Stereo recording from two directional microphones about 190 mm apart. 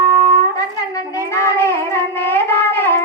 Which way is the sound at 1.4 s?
15° left (ahead or behind).